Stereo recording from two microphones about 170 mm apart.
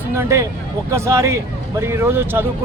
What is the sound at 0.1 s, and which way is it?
Speech, 15° right (ahead or behind).